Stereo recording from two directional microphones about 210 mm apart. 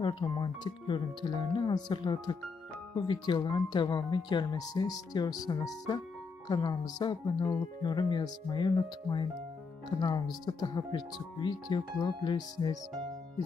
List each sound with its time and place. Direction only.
0.0 s speech: 20° left (ahead or behind)
6.4 s speech: 20° left (ahead or behind)